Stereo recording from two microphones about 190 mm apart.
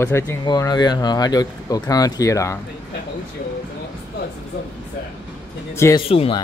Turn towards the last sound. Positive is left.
turn(degrees=30)  # may be behind; listen again after turning